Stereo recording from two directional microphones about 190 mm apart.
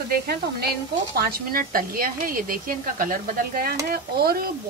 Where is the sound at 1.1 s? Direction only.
50° right (ahead or behind).